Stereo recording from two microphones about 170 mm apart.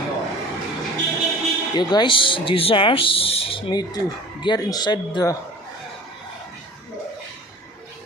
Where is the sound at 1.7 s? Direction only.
25° left (ahead or behind).